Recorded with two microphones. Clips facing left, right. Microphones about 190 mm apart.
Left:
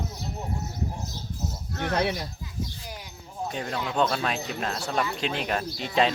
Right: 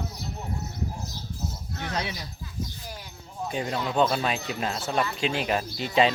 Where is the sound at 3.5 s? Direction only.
5° right (ahead or behind).